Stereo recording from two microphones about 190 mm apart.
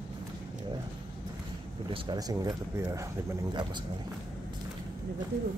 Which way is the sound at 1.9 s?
20° right (ahead or behind).